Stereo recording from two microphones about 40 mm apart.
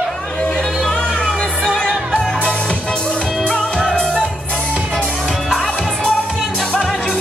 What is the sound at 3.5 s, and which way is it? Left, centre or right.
Music, centre.